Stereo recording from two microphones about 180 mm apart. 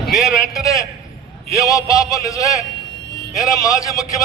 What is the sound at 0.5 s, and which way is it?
A man's voice, 20° left (ahead or behind).